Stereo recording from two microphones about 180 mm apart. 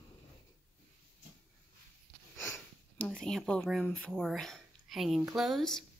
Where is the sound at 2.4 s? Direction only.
10° left (ahead or behind).